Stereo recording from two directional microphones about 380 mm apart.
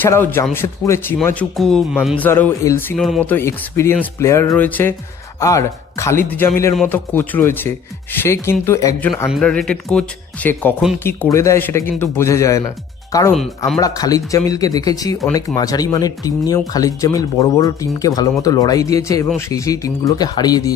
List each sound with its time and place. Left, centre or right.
0.0 s speech: centre